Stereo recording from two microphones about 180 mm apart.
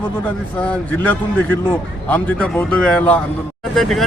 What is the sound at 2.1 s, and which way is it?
A man's voice, 5° left (ahead or behind).